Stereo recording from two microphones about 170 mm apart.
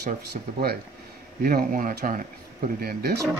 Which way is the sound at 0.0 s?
70° right (ahead or behind).